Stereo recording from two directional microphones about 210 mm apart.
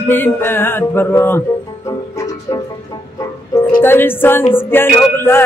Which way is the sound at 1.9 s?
15° left (ahead or behind).